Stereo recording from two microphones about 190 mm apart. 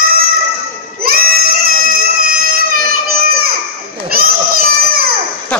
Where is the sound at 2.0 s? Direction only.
50° right (ahead or behind).